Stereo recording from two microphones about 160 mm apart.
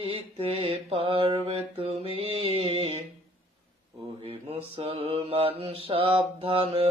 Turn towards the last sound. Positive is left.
turn(degrees=-35)  # may be behind; listen again after turning